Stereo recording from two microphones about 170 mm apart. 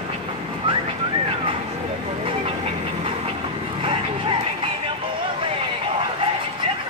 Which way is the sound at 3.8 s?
30° right (ahead or behind).